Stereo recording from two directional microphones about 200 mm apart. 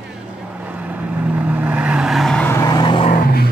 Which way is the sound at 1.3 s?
5° right (ahead or behind).